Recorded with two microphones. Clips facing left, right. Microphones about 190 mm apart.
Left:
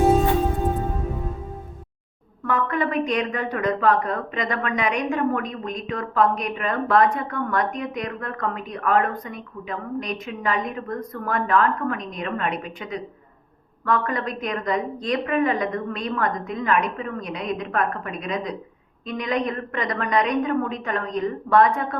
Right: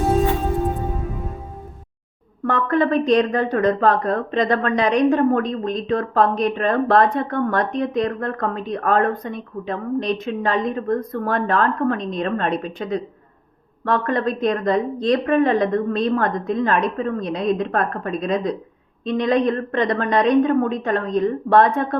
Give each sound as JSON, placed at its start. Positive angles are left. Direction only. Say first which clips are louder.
{"t": 2.6, "sound": "speech", "louder": "right 6 dB", "side_deg": -35}